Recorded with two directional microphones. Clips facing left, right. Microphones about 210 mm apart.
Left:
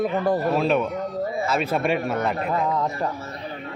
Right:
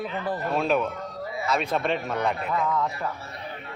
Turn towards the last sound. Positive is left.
turn(degrees=40)  # may be behind; listen again after turning